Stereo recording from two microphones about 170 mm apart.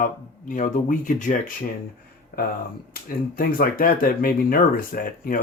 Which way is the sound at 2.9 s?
60° left (ahead or behind).